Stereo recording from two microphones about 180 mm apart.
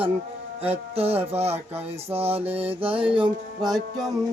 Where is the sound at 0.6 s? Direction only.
35° right (ahead or behind).